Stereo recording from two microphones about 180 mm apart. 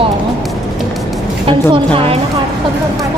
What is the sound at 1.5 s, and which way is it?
Speech, 30° right (ahead or behind).